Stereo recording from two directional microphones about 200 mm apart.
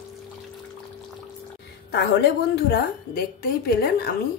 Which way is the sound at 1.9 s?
55° left (ahead or behind).